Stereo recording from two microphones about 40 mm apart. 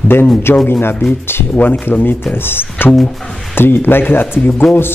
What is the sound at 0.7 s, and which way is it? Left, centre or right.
Speech, left.